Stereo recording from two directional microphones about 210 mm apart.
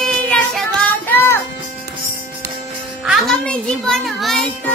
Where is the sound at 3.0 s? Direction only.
Centre (ahead or behind).